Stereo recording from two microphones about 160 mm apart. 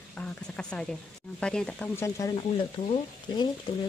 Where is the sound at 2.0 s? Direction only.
20° left (ahead or behind).